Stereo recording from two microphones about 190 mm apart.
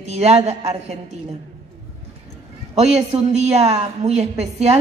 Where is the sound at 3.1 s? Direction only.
30° right (ahead or behind).